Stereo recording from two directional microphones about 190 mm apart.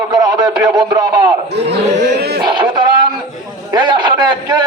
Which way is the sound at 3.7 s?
25° right (ahead or behind).